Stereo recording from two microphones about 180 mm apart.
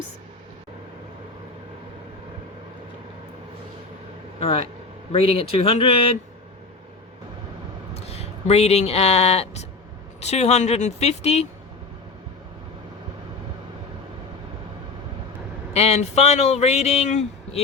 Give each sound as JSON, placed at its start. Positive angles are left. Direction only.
{"t": 4.4, "sound": "speech", "side_deg": 35}
{"t": 7.9, "sound": "speech", "side_deg": 35}
{"t": 15.7, "sound": "speech", "side_deg": 35}